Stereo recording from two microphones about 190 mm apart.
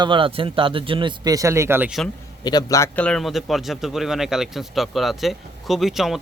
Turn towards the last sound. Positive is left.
turn(degrees=0)  # may be behind; listen again after turning